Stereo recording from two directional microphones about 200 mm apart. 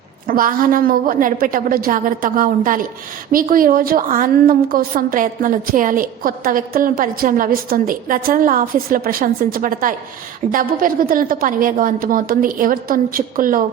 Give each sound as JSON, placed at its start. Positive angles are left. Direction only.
{"t": 0.3, "sound": "a woman's voice", "side_deg": -45}